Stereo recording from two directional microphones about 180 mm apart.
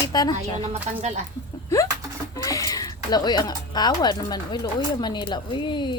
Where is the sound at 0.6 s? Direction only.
35° right (ahead or behind).